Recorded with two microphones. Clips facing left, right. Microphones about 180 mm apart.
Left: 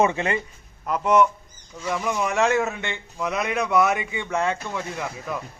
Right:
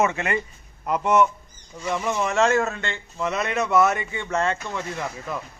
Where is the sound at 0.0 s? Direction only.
20° left (ahead or behind).